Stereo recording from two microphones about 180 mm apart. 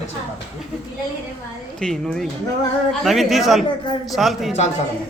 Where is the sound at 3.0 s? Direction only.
Centre (ahead or behind).